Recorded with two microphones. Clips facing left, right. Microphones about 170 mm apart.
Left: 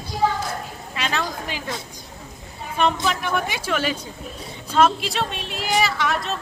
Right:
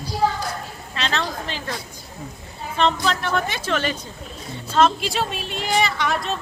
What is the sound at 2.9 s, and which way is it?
A woman's voice, 15° left (ahead or behind).